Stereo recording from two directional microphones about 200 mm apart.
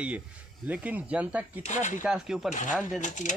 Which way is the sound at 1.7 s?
35° left (ahead or behind).